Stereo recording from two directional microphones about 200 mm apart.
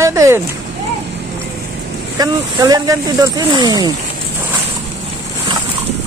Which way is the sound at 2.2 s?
20° right (ahead or behind).